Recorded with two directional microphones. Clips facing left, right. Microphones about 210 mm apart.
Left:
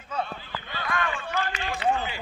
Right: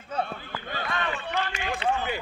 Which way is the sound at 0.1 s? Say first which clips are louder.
Right 1 dB; 55° right (ahead or behind).